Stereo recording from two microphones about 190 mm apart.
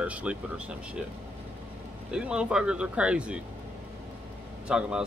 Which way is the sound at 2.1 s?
5° right (ahead or behind).